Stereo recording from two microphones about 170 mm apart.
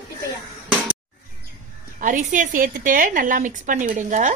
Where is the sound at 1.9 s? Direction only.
50° right (ahead or behind).